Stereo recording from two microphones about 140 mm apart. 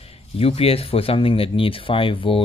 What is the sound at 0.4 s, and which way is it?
Speech, 45° left (ahead or behind).